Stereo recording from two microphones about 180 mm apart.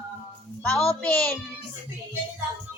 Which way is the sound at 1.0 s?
5° left (ahead or behind).